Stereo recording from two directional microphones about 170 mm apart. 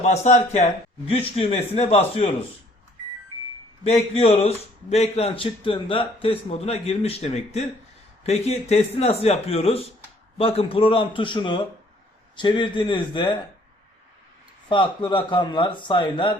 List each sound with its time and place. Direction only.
0.0 s a man's voice: 40° left (ahead or behind)
3.8 s a man's voice: 40° left (ahead or behind)
14.7 s speech: 30° left (ahead or behind)